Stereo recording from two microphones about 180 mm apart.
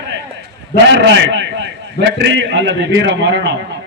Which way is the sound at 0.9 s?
80° right.